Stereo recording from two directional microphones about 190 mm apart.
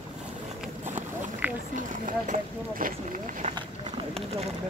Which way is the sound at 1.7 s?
45° right (ahead or behind).